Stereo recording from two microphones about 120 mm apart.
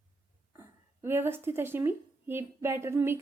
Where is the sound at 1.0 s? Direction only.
20° right (ahead or behind).